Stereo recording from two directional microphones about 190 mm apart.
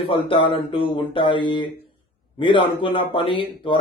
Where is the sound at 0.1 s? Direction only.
25° left (ahead or behind).